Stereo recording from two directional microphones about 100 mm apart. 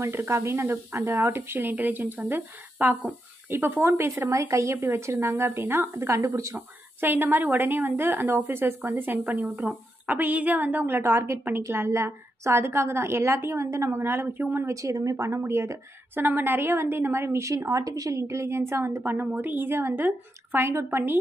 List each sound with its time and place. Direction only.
0.0 s speech: 25° right (ahead or behind)
6.5 s speech: 20° right (ahead or behind)